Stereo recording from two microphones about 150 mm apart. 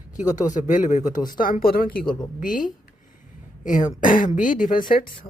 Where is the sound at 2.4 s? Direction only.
65° left (ahead or behind).